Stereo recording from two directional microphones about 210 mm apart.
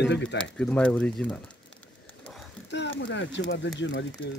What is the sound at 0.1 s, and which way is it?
Speech, 55° left (ahead or behind).